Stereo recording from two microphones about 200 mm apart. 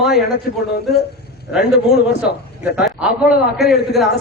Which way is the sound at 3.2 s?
Centre (ahead or behind).